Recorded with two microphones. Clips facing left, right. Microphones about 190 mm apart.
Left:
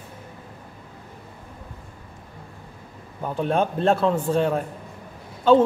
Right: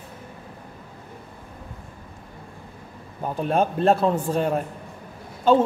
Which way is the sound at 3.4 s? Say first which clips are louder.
Right 1 dB; 5° right (ahead or behind).